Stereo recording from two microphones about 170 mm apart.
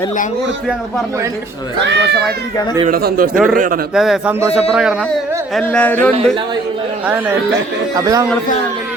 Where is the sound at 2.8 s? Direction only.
60° right (ahead or behind).